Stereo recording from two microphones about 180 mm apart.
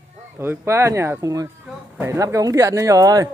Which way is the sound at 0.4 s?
15° right (ahead or behind).